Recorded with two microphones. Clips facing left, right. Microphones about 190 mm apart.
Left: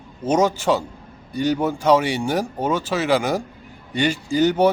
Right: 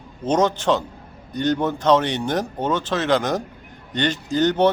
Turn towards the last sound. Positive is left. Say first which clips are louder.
# left 1 dB
turn(degrees=10)  # may be behind; listen again after turning